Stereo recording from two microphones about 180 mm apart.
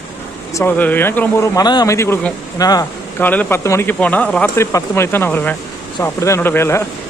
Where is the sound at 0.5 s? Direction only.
10° left (ahead or behind).